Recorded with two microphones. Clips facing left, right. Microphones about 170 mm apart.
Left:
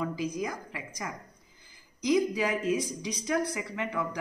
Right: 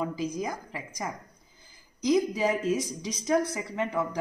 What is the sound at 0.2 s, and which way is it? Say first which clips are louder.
Speech: right 1 dB; 30° right (ahead or behind).